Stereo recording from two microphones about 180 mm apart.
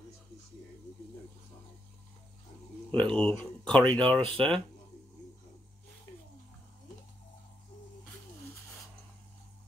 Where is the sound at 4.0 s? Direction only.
30° right (ahead or behind).